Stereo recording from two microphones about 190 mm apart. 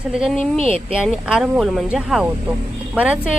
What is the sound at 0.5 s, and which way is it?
Speech, 30° right (ahead or behind).